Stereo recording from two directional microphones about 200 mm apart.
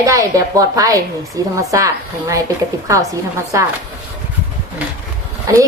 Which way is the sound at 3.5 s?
15° right (ahead or behind).